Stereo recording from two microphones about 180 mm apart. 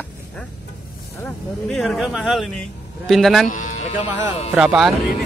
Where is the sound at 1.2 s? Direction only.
5° left (ahead or behind).